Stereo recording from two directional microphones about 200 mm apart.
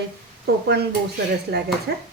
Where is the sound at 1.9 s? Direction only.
50° right (ahead or behind).